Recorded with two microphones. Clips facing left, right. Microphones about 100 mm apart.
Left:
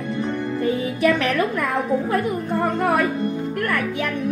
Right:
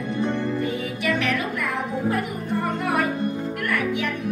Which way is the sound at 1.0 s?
40° left (ahead or behind).